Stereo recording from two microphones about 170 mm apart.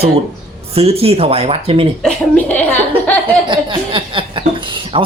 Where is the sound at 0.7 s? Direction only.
35° right (ahead or behind).